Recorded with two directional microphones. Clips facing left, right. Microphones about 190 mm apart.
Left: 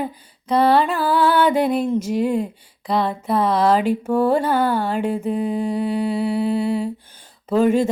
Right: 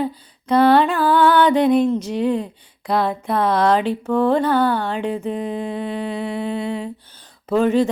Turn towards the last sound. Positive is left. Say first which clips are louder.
# even
turn(degrees=5)  # may be behind; listen again after turning